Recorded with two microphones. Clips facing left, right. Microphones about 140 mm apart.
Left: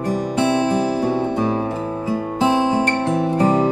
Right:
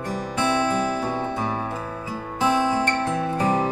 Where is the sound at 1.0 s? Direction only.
15° left (ahead or behind).